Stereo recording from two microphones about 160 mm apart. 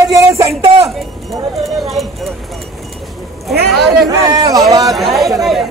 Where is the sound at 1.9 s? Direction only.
Centre (ahead or behind).